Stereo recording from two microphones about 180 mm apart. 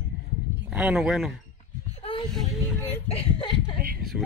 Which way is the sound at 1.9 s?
30° left (ahead or behind).